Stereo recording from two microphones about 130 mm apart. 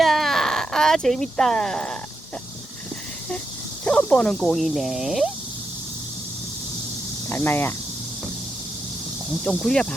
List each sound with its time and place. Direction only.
0.0 s baby cry: centre (ahead or behind)
3.8 s speech: 5° left (ahead or behind)
7.3 s speech: 15° left (ahead or behind)
9.4 s speech: 5° left (ahead or behind)